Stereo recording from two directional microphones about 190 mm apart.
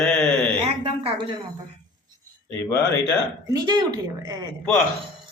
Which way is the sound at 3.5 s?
20° right (ahead or behind).